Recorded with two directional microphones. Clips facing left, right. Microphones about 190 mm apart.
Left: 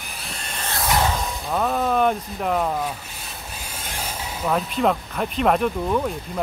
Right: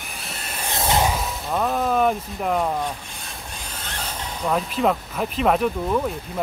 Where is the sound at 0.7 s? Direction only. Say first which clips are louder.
Right 1 dB; 20° right (ahead or behind).